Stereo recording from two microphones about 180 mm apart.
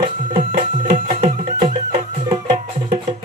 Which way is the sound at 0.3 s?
35° right (ahead or behind).